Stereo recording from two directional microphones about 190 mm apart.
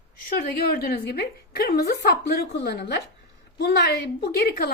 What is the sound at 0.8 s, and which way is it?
A woman's voice, 55° left (ahead or behind).